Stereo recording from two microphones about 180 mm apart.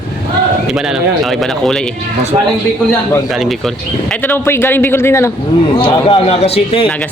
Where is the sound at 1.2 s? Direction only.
Centre (ahead or behind).